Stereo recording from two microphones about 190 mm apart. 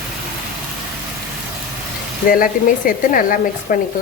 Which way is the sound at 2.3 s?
45° left (ahead or behind).